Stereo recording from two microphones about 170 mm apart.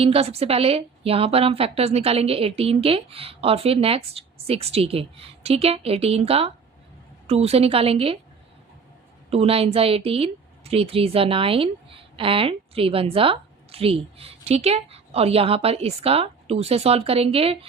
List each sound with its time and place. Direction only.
0.0 s a woman's voice: 35° right (ahead or behind)
9.3 s a woman's voice: 35° right (ahead or behind)